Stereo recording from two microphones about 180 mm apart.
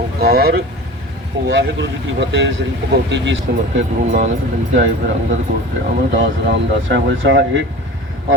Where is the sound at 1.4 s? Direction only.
75° right (ahead or behind).